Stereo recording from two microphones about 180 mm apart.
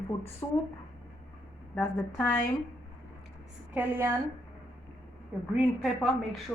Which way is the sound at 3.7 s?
15° right (ahead or behind).